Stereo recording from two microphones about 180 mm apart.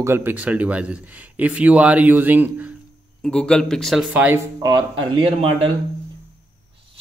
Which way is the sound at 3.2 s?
5° left (ahead or behind).